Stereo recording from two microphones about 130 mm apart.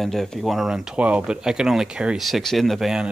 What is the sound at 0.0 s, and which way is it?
A man's voice, centre (ahead or behind).